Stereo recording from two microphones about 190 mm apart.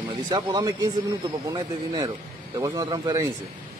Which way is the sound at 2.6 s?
20° right (ahead or behind).